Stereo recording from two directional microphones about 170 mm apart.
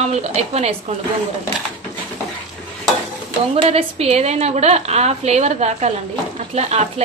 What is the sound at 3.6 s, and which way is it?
Speech, 35° right (ahead or behind).